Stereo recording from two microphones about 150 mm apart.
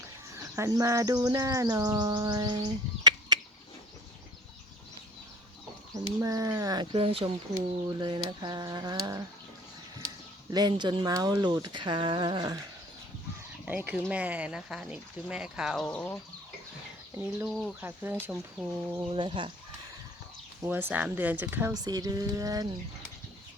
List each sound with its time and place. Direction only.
0.5 s bird: 20° right (ahead or behind)
5.9 s bird: 20° right (ahead or behind)
6.9 s speech: 40° right (ahead or behind)
7.5 s bird: 25° right (ahead or behind)
10.5 s bird: 30° right (ahead or behind)
13.7 s speech: 10° right (ahead or behind); by 16.1 s 5° left (ahead or behind)
17.5 s speech: centre (ahead or behind)
17.7 s speech: 15° right (ahead or behind)
19.0 s speech: 35° right (ahead or behind)
20.7 s speech: 15° right (ahead or behind)
21.8 s bird: 25° right (ahead or behind)